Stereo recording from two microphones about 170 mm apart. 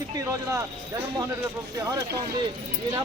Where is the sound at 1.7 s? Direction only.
20° right (ahead or behind).